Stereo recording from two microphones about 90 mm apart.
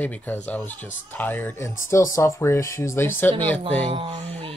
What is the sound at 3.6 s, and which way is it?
Speech, 90° right.